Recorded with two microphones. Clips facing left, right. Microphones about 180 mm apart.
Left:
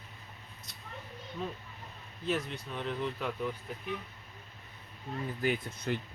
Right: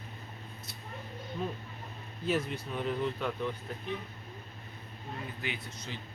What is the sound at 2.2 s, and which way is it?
Speech, centre (ahead or behind).